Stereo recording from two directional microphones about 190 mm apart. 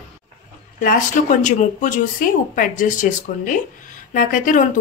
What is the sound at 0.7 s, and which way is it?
Speech, 45° left (ahead or behind).